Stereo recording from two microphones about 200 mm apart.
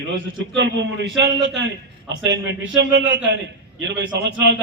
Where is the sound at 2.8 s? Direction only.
65° right (ahead or behind).